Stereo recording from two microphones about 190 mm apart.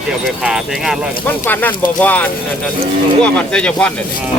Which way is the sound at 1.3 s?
10° left (ahead or behind).